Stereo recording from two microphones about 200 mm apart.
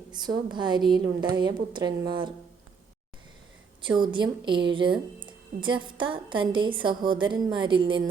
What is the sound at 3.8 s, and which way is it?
A woman's voice, 25° right (ahead or behind).